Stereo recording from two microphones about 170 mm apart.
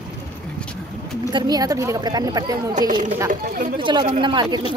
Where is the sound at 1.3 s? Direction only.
25° right (ahead or behind).